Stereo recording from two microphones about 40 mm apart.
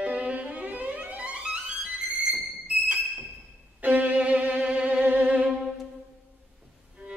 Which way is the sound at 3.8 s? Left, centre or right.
Right.